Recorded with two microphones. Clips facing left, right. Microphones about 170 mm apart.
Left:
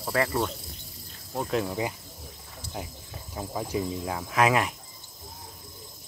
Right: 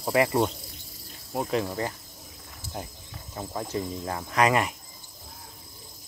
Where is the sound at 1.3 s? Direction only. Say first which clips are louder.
Right 1 dB; centre (ahead or behind).